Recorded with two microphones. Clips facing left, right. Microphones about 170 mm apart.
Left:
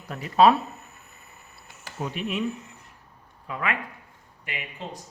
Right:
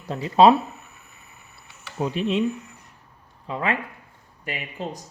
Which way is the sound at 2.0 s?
30° right (ahead or behind).